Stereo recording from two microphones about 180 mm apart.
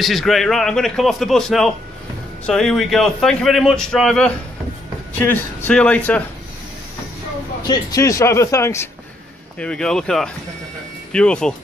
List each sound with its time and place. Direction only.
0.0 s a man's voice: centre (ahead or behind)
7.6 s speech: 20° left (ahead or behind)
9.6 s a man's voice: 5° left (ahead or behind)